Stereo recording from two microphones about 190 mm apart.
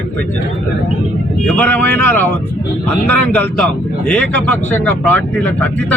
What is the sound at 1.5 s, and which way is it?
Speech, 10° left (ahead or behind).